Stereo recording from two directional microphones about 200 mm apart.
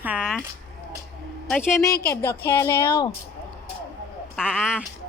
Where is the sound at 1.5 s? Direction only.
5° left (ahead or behind).